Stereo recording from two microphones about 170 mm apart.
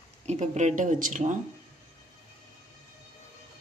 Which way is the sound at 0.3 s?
40° right (ahead or behind).